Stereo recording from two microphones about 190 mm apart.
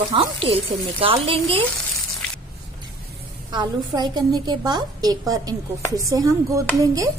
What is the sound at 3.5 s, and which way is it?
A woman's voice, 20° right (ahead or behind).